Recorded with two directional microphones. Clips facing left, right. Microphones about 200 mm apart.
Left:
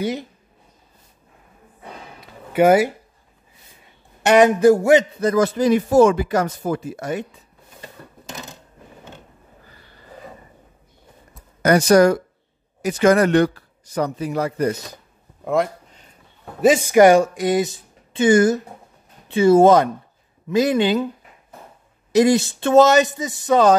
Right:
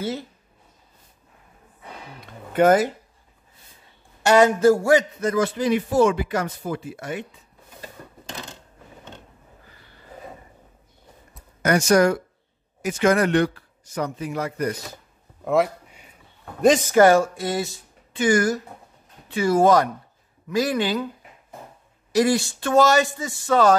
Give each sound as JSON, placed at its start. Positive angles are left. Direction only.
{"t": 0.0, "sound": "speech", "side_deg": 15}
{"t": 2.1, "sound": "a sound", "side_deg": 5}
{"t": 4.2, "sound": "speech", "side_deg": 20}
{"t": 5.2, "sound": "speech", "side_deg": 40}
{"t": 8.3, "sound": "a sound", "side_deg": 10}
{"t": 11.6, "sound": "speech", "side_deg": 35}
{"t": 15.4, "sound": "a sound", "side_deg": -5}
{"t": 16.6, "sound": "speech", "side_deg": 10}
{"t": 22.1, "sound": "speech", "side_deg": 20}